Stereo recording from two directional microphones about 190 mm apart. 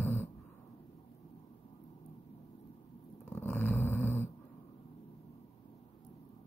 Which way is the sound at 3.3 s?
10° left (ahead or behind).